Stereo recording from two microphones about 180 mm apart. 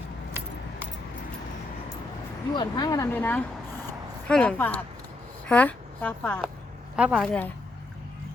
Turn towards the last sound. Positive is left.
turn(degrees=5)  # may be behind; listen again after turning